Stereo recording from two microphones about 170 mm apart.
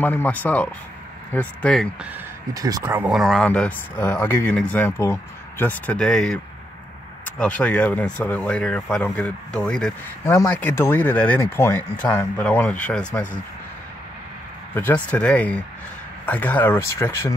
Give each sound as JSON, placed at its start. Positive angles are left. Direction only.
{"t": 0.0, "sound": "speech", "side_deg": 10}
{"t": 2.5, "sound": "speech", "side_deg": -20}
{"t": 3.1, "sound": "speech", "side_deg": 0}
{"t": 10.2, "sound": "speech", "side_deg": 15}
{"t": 14.7, "sound": "speech", "side_deg": 10}